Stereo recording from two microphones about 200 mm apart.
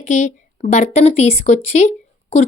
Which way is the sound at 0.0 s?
35° left (ahead or behind).